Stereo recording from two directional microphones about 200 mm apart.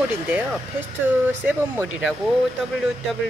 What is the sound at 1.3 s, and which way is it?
Speech, 10° right (ahead or behind).